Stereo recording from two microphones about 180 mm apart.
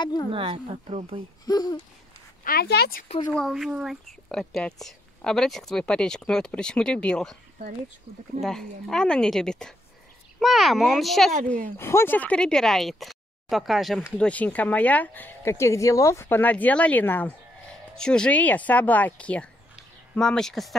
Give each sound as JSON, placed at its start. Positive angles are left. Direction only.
{"t": 0.0, "sound": "speech", "side_deg": 25}
{"t": 0.3, "sound": "speech", "side_deg": -30}
{"t": 1.4, "sound": "speech", "side_deg": 20}
{"t": 2.4, "sound": "speech", "side_deg": 60}
{"t": 3.3, "sound": "speech", "side_deg": 5}
{"t": 8.4, "sound": "speech", "side_deg": 0}
{"t": 11.7, "sound": "speech", "side_deg": 15}